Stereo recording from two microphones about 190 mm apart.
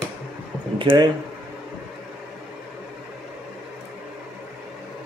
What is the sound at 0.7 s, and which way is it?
Speech, 25° right (ahead or behind).